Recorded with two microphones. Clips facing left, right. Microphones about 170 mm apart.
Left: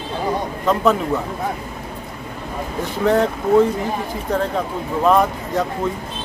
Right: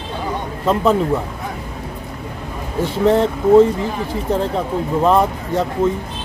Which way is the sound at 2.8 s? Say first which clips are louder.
Right 3 dB; 25° right (ahead or behind).